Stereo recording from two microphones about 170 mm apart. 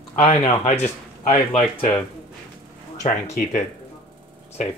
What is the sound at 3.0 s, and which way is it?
Speech, 45° left (ahead or behind).